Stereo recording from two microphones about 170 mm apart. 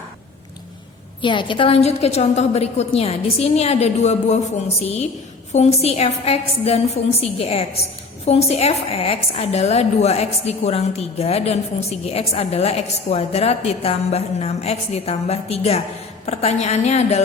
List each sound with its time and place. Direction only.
1.2 s a woman's voice: 30° left (ahead or behind)
5.5 s a woman's voice: 40° left (ahead or behind)